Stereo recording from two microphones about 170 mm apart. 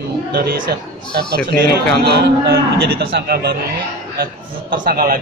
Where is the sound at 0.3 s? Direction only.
70° right (ahead or behind).